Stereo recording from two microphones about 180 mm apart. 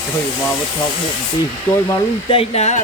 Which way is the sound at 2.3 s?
35° left (ahead or behind).